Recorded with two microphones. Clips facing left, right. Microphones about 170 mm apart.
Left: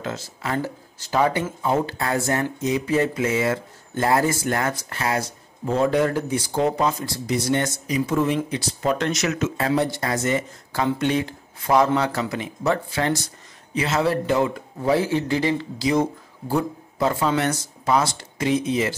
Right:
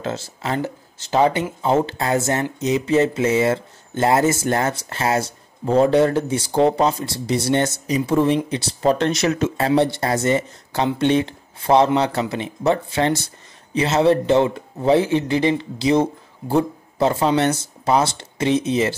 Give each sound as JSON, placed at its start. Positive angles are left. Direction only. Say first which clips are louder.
{"t": 0.0, "sound": "speech", "louder": "right 3 dB", "side_deg": -30}